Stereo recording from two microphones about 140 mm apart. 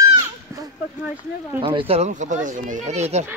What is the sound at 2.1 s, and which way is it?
Speech, 60° right (ahead or behind).